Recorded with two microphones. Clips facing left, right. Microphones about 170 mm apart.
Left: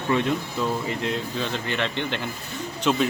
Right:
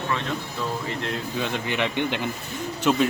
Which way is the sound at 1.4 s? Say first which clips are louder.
Right 1 dB; 15° right (ahead or behind).